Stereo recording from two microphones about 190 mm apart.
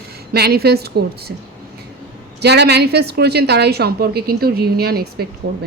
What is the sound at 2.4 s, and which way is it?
A woman's voice, 60° right (ahead or behind).